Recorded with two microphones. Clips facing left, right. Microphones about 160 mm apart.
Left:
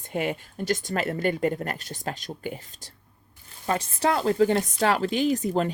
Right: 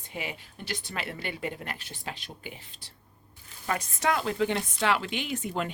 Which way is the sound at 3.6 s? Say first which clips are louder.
Left 4 dB; 30° left (ahead or behind).